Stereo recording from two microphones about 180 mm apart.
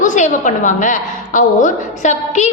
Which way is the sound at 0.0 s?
45° left (ahead or behind).